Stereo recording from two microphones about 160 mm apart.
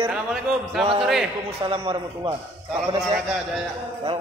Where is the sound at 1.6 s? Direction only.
35° right (ahead or behind).